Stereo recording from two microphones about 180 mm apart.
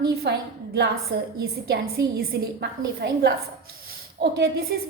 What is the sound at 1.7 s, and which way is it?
A woman's voice, 60° right (ahead or behind).